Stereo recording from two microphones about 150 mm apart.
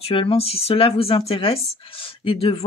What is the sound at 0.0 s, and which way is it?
Speech, 40° left (ahead or behind).